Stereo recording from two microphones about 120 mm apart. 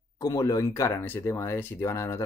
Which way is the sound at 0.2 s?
30° left (ahead or behind).